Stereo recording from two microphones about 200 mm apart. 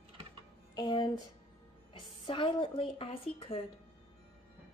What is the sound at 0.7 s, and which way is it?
A woman's voice, 20° left (ahead or behind).